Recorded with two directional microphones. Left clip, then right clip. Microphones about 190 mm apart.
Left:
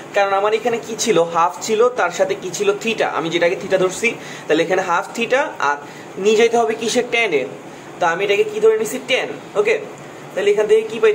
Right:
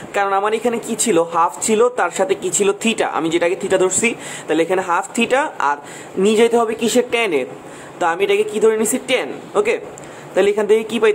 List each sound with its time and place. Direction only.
0.1 s speech: 40° right (ahead or behind)
8.0 s a man's voice: 45° right (ahead or behind)